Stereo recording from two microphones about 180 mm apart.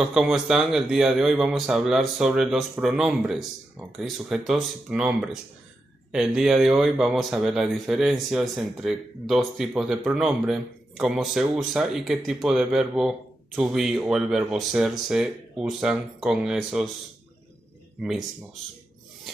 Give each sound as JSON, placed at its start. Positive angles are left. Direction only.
{"t": 0.0, "sound": "speech", "side_deg": -5}